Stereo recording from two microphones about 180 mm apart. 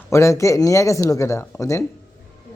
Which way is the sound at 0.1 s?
15° left (ahead or behind).